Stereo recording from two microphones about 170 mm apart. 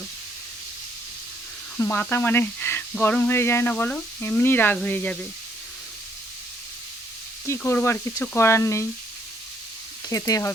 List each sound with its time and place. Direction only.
1.8 s speech: 10° left (ahead or behind)
7.4 s speech: 15° left (ahead or behind)
10.1 s speech: 20° left (ahead or behind)